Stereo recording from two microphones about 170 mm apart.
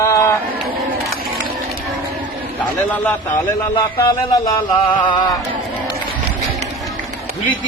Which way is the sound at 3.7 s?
25° left (ahead or behind).